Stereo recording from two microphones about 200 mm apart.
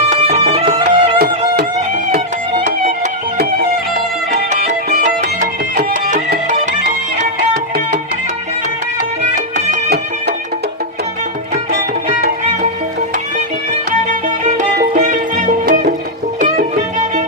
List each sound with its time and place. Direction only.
0.1 s music: 30° right (ahead or behind)
2.6 s music: 35° right (ahead or behind)
4.3 s music: 35° right (ahead or behind)
6.5 s music: 35° right (ahead or behind)
9.3 s music: 35° right (ahead or behind)
14.1 s music: 40° right (ahead or behind)